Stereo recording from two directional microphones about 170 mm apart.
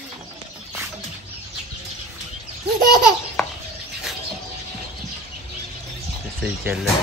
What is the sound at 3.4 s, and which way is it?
Bird, 5° left (ahead or behind).